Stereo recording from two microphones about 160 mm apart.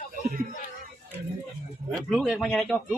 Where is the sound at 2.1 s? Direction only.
Centre (ahead or behind).